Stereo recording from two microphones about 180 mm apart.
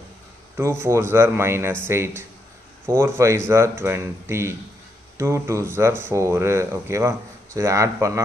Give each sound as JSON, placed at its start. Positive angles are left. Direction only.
{"t": 0.6, "sound": "speech", "side_deg": -15}